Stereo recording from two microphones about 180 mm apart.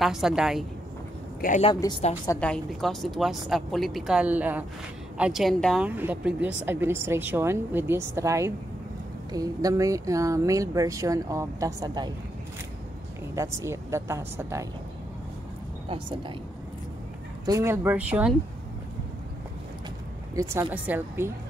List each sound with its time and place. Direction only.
0.0 s speech: centre (ahead or behind)
1.4 s a woman's voice: 50° left (ahead or behind)
1.8 s a woman's voice: 25° left (ahead or behind)
2.4 s speech: 5° left (ahead or behind)
5.9 s speech: 10° right (ahead or behind)
13.3 s speech: 15° right (ahead or behind)
17.5 s speech: 15° right (ahead or behind)
20.7 s speech: 10° right (ahead or behind)